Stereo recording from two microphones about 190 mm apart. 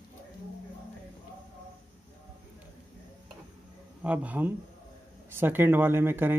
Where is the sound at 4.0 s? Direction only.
5° right (ahead or behind).